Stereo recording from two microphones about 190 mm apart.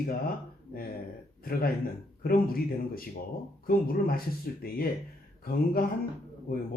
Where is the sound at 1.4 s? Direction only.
50° left (ahead or behind).